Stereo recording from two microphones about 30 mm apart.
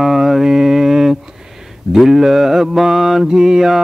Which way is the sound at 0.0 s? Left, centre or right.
Centre.